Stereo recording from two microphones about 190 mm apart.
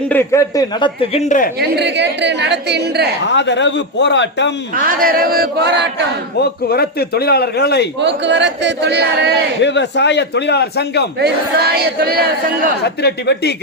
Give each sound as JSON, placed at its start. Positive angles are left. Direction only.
{"t": 0.1, "sound": "a man's voice", "side_deg": 15}
{"t": 1.1, "sound": "speech", "side_deg": 40}
{"t": 1.7, "sound": "speech", "side_deg": -65}
{"t": 3.2, "sound": "a man's voice", "side_deg": 70}
{"t": 4.9, "sound": "chant", "side_deg": -50}
{"t": 6.4, "sound": "a man's voice", "side_deg": 55}
{"t": 8.0, "sound": "speech", "side_deg": -70}
{"t": 9.6, "sound": "a man's voice", "side_deg": 65}
{"t": 11.2, "sound": "speech", "side_deg": -55}
{"t": 12.8, "sound": "a man's voice", "side_deg": 60}